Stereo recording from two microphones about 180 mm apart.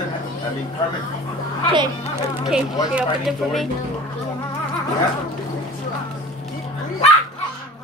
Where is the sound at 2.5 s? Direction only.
5° right (ahead or behind).